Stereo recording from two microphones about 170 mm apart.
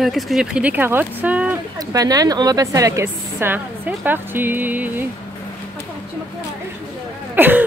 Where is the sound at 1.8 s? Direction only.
20° right (ahead or behind).